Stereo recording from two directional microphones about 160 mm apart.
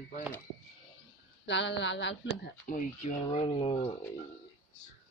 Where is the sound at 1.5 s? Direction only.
90° left.